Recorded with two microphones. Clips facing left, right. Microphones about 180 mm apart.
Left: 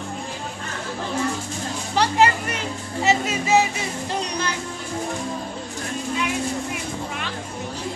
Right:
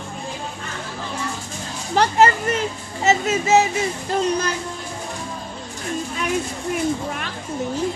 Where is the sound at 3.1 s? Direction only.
45° right (ahead or behind).